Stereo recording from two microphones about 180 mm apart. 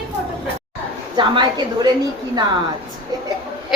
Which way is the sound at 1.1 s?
25° right (ahead or behind).